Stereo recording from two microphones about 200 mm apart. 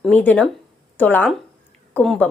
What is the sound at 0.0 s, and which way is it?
A woman's voice, 10° left (ahead or behind).